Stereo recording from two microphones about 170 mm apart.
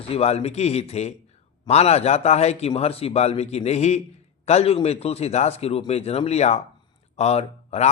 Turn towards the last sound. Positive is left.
turn(degrees=40)  # may be behind; listen again after turning